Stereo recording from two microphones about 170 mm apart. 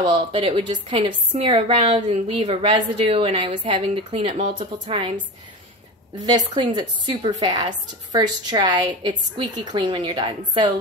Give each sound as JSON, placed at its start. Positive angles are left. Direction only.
{"t": 0.0, "sound": "a woman's voice", "side_deg": -30}
{"t": 4.8, "sound": "a woman's voice", "side_deg": -30}